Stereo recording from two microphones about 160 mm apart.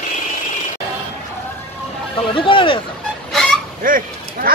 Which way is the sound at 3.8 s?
60° right (ahead or behind).